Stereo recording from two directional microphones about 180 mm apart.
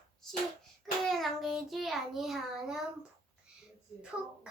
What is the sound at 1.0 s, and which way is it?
Child singing, centre (ahead or behind).